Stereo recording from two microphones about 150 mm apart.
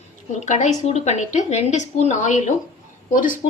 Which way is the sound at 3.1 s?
65° left (ahead or behind).